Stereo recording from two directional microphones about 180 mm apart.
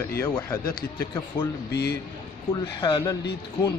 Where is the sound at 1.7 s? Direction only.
65° left (ahead or behind).